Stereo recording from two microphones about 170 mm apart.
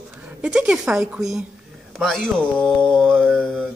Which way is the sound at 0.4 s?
5° right (ahead or behind).